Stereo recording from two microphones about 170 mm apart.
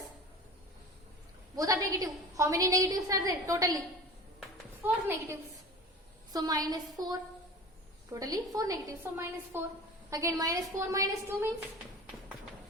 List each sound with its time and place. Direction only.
1.5 s a woman's voice: 20° right (ahead or behind)
4.8 s a woman's voice: 15° right (ahead or behind)